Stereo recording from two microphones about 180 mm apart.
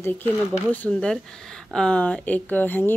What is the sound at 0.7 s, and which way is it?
A woman's voice, 10° left (ahead or behind).